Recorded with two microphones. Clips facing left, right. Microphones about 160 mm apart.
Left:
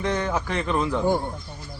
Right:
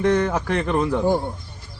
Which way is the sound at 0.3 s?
55° right (ahead or behind).